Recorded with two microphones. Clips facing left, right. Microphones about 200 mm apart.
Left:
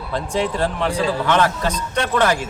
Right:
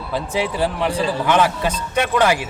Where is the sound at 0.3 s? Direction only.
5° right (ahead or behind).